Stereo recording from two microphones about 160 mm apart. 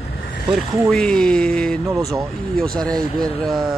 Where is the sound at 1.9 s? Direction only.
20° right (ahead or behind).